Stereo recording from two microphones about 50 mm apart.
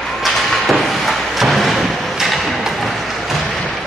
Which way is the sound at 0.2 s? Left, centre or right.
Centre.